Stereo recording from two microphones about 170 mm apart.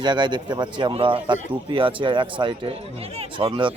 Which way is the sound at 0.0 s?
25° right (ahead or behind).